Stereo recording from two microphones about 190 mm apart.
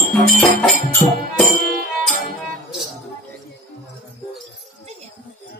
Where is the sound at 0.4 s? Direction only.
5° left (ahead or behind).